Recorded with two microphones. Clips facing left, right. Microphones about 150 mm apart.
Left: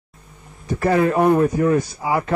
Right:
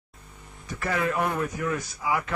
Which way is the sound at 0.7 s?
35° left (ahead or behind).